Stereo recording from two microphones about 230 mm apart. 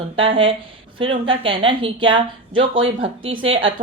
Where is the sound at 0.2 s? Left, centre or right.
Right.